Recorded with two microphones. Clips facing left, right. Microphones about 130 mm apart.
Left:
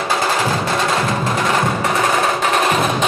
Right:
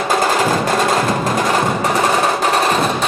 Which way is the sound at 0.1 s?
45° right (ahead or behind).